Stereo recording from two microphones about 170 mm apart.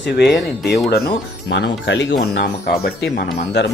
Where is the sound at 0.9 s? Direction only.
75° left (ahead or behind).